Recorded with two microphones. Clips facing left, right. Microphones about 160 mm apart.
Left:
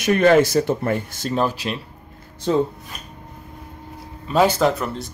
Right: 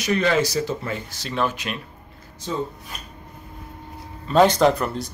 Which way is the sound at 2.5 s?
70° left (ahead or behind).